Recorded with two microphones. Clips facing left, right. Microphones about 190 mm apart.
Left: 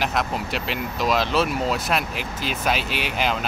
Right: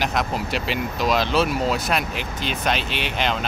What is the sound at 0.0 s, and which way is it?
Speech, centre (ahead or behind).